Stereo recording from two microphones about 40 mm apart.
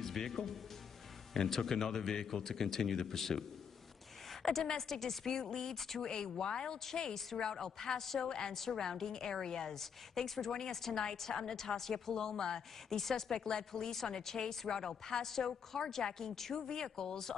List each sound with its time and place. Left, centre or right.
0.0 s a woman's voice: centre